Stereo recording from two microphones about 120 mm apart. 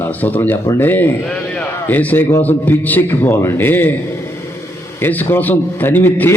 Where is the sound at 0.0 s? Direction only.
15° left (ahead or behind).